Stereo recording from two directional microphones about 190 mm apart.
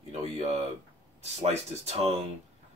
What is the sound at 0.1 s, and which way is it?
Speech, 35° right (ahead or behind).